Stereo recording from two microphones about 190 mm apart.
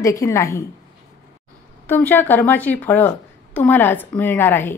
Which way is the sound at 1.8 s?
10° left (ahead or behind).